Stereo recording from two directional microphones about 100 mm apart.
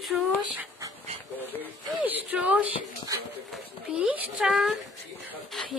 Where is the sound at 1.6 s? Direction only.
15° right (ahead or behind).